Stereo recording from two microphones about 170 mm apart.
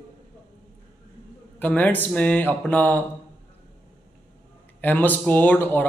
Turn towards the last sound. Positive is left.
turn(degrees=10)  # may be behind; listen again after turning